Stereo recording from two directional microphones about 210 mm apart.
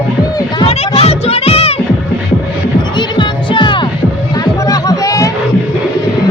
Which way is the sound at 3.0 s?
20° left (ahead or behind).